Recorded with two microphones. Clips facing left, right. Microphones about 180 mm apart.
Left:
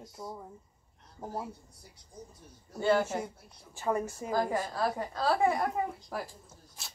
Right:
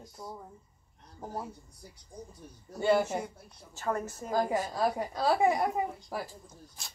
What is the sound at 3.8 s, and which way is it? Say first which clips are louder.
Speech: left 2 dB; 10° left (ahead or behind).